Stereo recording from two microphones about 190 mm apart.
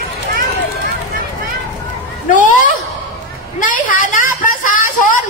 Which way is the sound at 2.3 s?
40° left (ahead or behind).